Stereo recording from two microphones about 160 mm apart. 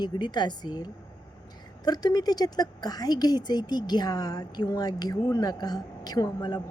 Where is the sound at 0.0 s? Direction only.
25° left (ahead or behind).